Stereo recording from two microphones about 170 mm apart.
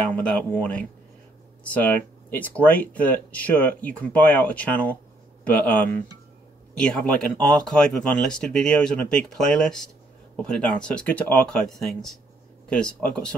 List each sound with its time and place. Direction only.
0.1 s speech: 10° left (ahead or behind)